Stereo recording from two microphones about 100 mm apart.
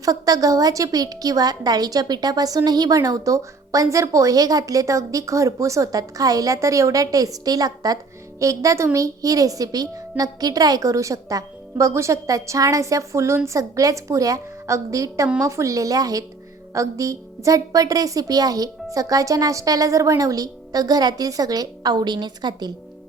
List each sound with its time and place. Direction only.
0.0 s a woman's voice: 35° right (ahead or behind)